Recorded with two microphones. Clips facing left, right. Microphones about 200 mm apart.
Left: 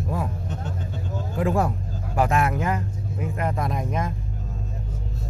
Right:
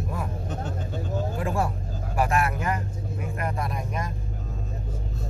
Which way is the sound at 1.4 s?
20° left (ahead or behind).